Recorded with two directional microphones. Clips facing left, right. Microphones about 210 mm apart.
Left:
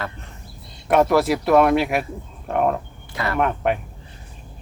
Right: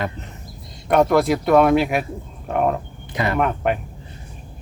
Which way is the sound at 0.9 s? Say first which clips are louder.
Right 1 dB; centre (ahead or behind).